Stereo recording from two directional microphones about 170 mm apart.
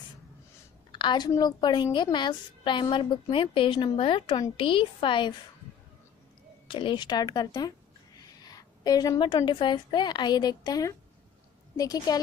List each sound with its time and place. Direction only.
0.9 s a woman's voice: 25° left (ahead or behind)
6.7 s a woman's voice: 30° left (ahead or behind)